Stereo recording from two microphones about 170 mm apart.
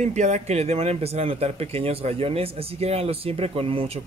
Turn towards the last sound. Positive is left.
turn(degrees=-35)  # may be behind; listen again after turning